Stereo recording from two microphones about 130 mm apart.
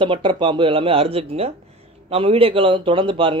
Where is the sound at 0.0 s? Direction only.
40° right (ahead or behind).